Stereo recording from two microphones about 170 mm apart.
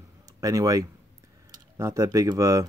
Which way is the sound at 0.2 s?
20° right (ahead or behind).